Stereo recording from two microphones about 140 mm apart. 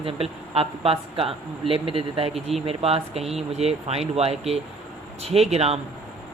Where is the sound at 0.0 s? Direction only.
45° right (ahead or behind).